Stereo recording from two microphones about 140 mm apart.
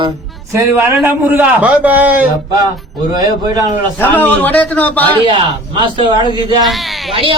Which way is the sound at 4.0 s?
15° left (ahead or behind).